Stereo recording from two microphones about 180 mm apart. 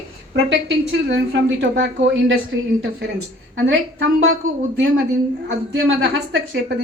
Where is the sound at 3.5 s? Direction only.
75° right (ahead or behind).